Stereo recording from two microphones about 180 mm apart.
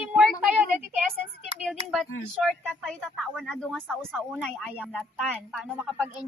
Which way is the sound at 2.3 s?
Centre (ahead or behind).